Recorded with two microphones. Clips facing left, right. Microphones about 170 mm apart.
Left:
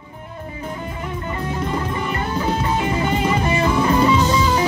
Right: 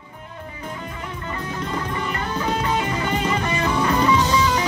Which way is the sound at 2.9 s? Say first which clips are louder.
Left 3 dB; 25° left (ahead or behind).